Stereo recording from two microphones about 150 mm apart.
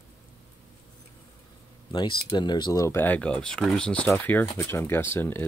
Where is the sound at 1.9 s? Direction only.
30° left (ahead or behind).